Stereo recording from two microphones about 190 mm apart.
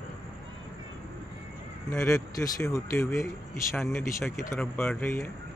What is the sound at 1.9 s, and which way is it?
Speech, 15° left (ahead or behind).